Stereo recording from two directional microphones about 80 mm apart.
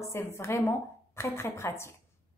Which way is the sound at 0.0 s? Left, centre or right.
Left.